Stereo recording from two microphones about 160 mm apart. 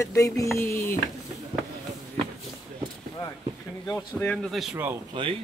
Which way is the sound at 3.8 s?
15° left (ahead or behind).